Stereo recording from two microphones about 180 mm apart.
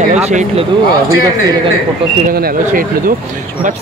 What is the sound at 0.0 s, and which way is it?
Speech, 40° right (ahead or behind).